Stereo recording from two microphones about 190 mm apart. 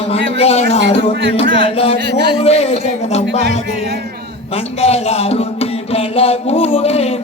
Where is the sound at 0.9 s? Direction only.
30° left (ahead or behind).